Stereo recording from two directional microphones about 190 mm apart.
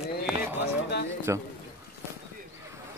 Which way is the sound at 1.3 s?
15° right (ahead or behind).